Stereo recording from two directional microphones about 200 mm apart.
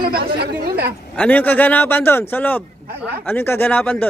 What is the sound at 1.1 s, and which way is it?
A man's voice, 10° left (ahead or behind).